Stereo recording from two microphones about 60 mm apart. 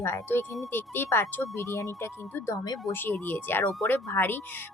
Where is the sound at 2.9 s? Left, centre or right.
Left.